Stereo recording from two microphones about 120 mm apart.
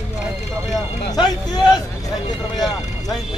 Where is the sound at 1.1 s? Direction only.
35° left (ahead or behind).